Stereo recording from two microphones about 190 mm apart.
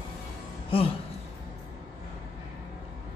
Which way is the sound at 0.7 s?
30° left (ahead or behind).